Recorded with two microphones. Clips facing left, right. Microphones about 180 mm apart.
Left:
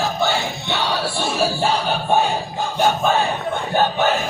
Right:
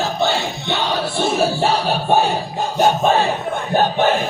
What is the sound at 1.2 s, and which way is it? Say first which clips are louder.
Speech: right 4 dB; 25° right (ahead or behind).